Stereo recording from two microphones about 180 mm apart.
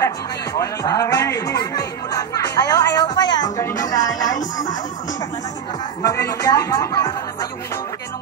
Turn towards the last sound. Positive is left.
turn(degrees=20)  # may be behind; listen again after turning